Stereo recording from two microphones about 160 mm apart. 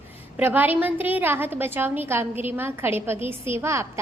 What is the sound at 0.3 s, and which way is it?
A woman's voice, 10° right (ahead or behind).